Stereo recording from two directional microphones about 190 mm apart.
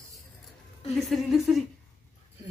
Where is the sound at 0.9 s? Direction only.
Centre (ahead or behind).